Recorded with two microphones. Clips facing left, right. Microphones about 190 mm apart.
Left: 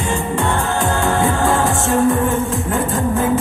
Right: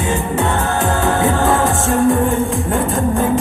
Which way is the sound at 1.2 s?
Centre (ahead or behind).